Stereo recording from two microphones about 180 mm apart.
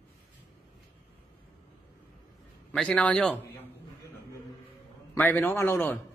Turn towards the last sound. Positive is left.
turn(degrees=10)  # may be behind; listen again after turning